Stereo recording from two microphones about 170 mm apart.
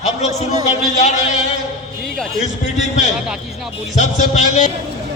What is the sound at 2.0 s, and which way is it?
Music, 5° left (ahead or behind).